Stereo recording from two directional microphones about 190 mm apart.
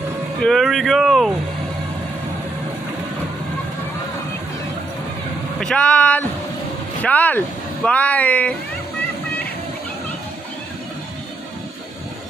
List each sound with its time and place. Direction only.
0.4 s speech: centre (ahead or behind)
5.6 s speech: 5° left (ahead or behind)